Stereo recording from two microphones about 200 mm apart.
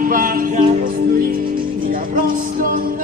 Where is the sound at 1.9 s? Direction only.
45° right (ahead or behind).